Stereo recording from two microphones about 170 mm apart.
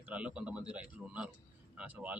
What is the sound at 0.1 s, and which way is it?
Speech, 5° right (ahead or behind).